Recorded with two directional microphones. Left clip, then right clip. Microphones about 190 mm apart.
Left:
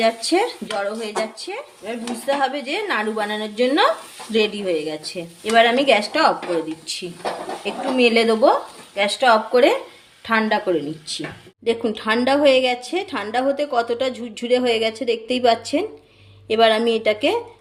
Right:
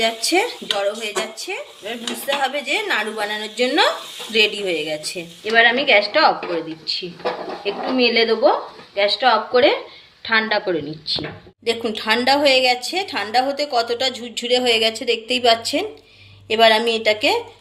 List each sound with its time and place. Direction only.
0.0 s a woman's voice: 50° left (ahead or behind)
7.6 s a woman's voice: 65° left (ahead or behind)
10.2 s a woman's voice: 45° left (ahead or behind)